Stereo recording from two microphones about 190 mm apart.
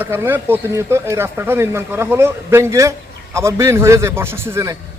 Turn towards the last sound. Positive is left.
turn(degrees=-15)  # may be behind; listen again after turning